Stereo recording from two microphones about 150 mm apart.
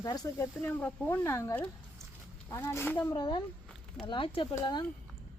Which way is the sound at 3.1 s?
30° left (ahead or behind).